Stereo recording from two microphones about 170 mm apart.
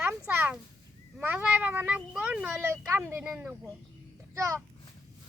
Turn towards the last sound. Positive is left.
turn(degrees=-20)  # may be behind; listen again after turning